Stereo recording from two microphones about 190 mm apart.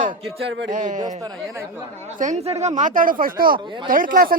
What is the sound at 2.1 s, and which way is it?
Speech, 40° right (ahead or behind).